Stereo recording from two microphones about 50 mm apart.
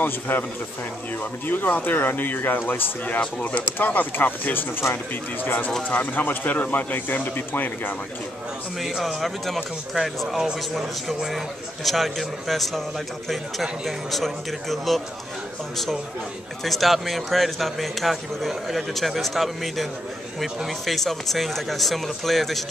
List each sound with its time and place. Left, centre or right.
0.0 s speech: left
1.5 s speech: left
3.2 s speech: left
3.7 s speech: left
9.0 s a man's voice: centre
16.6 s a man's voice: centre